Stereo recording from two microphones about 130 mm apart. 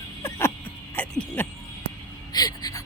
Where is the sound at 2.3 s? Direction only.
30° left (ahead or behind).